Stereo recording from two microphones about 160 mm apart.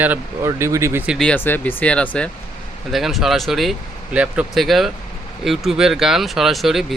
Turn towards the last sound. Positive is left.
turn(degrees=0)  # may be behind; listen again after turning